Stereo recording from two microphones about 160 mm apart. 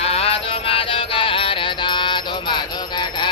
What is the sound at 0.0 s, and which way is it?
Music, 40° left (ahead or behind).